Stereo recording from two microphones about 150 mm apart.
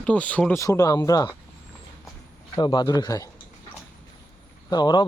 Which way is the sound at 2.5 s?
30° left (ahead or behind).